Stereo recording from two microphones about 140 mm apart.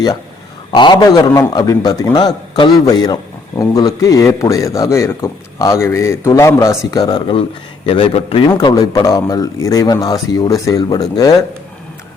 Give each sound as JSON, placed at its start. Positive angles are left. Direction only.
{"t": 0.8, "sound": "a man's voice", "side_deg": 30}
{"t": 7.9, "sound": "speech", "side_deg": 40}
{"t": 8.4, "sound": "a man's voice", "side_deg": 25}